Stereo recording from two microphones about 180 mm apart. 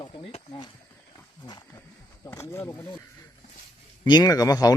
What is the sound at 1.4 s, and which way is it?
Wild animals, 25° left (ahead or behind).